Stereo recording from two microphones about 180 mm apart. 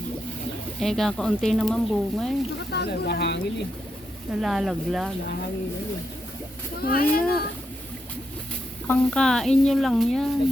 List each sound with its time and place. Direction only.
0.8 s speech: centre (ahead or behind)
2.7 s speech: 65° left (ahead or behind)
4.4 s speech: centre (ahead or behind)
6.8 s speech: 55° left (ahead or behind)
8.9 s speech: 5° left (ahead or behind)